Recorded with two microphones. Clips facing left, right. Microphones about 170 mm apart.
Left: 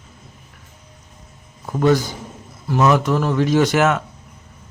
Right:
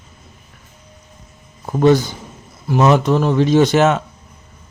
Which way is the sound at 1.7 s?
25° right (ahead or behind).